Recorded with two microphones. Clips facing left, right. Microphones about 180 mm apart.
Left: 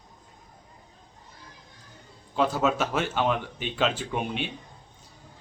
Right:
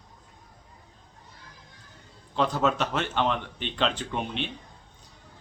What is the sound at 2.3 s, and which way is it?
A man's voice, 5° left (ahead or behind).